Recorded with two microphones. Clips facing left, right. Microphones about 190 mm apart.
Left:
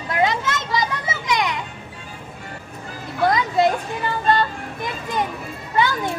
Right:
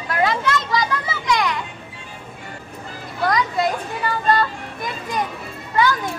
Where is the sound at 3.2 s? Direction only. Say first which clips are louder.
Left 2 dB; 25° left (ahead or behind).